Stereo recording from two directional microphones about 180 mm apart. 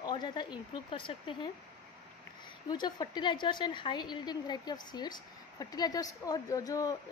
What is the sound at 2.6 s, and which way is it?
A woman's voice, 25° left (ahead or behind).